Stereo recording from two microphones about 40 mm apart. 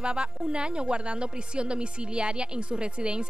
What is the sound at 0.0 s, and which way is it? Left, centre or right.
A woman's voice, right.